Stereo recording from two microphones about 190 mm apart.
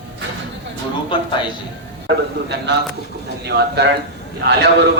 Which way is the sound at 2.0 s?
65° right (ahead or behind).